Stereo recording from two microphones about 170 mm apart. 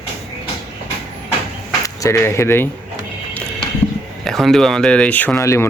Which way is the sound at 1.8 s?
20° left (ahead or behind).